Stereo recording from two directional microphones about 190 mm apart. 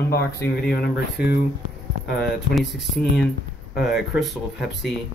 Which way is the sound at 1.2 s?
55° left (ahead or behind).